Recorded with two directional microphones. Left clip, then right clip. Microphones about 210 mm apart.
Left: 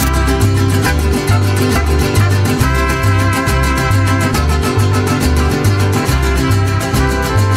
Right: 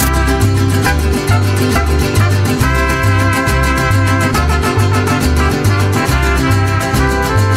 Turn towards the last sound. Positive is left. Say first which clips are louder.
# right 2 dB
turn(degrees=0)  # may be behind; listen again after turning